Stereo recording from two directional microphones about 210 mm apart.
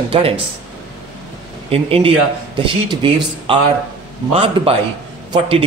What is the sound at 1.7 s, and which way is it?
Speech, 25° right (ahead or behind).